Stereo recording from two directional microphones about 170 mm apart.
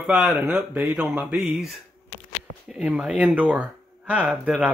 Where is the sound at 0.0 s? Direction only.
5° right (ahead or behind).